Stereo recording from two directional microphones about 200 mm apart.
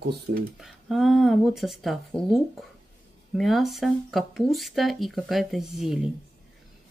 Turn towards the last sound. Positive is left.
turn(degrees=0)  # may be behind; listen again after turning